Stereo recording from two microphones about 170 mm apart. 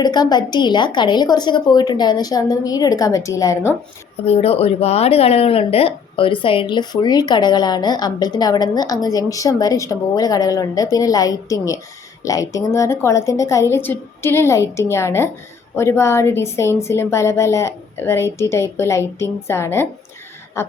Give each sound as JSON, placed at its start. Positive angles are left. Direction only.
{"t": 0.0, "sound": "speech", "side_deg": 25}
{"t": 4.3, "sound": "a woman's voice", "side_deg": 35}